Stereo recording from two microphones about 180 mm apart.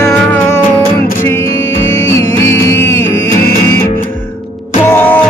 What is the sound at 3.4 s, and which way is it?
Music, 55° left (ahead or behind).